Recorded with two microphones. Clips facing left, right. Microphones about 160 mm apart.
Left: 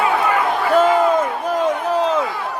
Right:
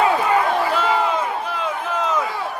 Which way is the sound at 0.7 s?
45° left (ahead or behind).